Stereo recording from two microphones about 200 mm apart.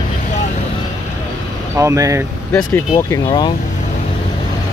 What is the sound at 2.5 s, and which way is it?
Speech, 10° left (ahead or behind).